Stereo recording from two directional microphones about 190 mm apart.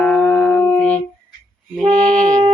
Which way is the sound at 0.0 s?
5° left (ahead or behind).